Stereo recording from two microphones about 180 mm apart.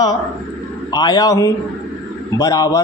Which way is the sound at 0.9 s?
25° left (ahead or behind).